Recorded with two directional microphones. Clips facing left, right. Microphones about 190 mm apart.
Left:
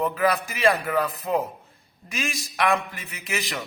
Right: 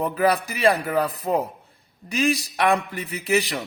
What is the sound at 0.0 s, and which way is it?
A man's voice, 35° right (ahead or behind).